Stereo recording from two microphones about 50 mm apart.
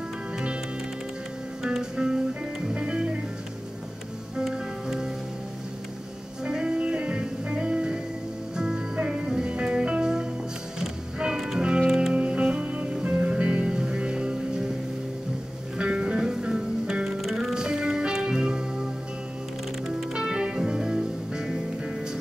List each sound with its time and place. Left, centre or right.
1.6 s music: centre
4.4 s music: centre
6.4 s music: centre
15.8 s music: centre
20.2 s music: centre